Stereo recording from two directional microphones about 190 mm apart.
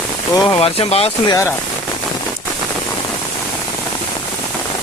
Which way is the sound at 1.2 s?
20° left (ahead or behind).